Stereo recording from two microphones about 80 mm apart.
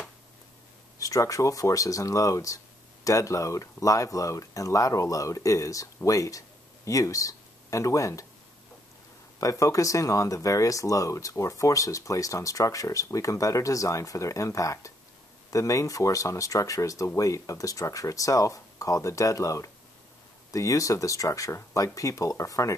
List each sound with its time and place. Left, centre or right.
0.9 s speech: left
9.4 s speech: left